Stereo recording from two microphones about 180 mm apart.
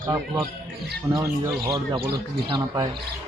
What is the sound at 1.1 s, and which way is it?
Speech, 15° right (ahead or behind).